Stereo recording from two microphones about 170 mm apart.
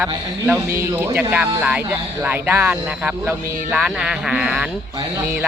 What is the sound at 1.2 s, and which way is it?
Speech, 10° right (ahead or behind).